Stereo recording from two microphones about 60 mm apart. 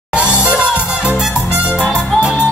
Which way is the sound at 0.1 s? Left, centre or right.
Centre.